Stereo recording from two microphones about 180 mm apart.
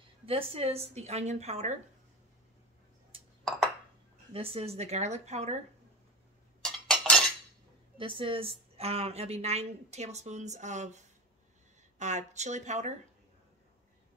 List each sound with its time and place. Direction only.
0.3 s a woman's voice: 30° right (ahead or behind)
3.4 s a sound: centre (ahead or behind)
4.3 s a woman's voice: 30° right (ahead or behind)
6.6 s chink: 5° left (ahead or behind)
8.0 s a woman's voice: 30° right (ahead or behind)
12.0 s a woman's voice: 40° right (ahead or behind)